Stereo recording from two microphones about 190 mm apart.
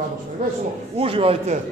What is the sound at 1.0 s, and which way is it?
Speech, 30° right (ahead or behind).